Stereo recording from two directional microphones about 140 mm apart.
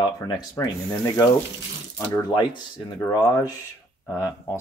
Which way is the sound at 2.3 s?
35° left (ahead or behind).